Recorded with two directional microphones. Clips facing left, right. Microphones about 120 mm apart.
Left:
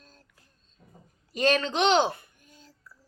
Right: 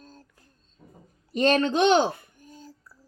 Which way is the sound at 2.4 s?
35° right (ahead or behind).